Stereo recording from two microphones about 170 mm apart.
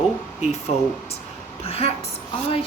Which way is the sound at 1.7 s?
35° left (ahead or behind).